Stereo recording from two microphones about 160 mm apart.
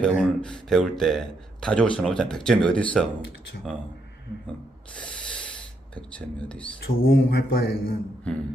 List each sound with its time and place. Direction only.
0.0 s a man's voice: 5° left (ahead or behind)
4.9 s snort: 5° left (ahead or behind)
6.1 s speech: 5° left (ahead or behind)
6.8 s speech: 70° left (ahead or behind)